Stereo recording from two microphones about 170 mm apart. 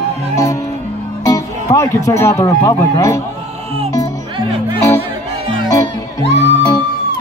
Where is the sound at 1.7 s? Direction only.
15° left (ahead or behind).